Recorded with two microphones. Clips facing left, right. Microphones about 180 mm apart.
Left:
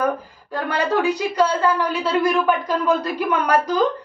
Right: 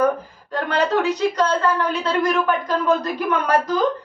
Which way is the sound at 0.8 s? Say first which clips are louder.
Right 1 dB; 10° left (ahead or behind).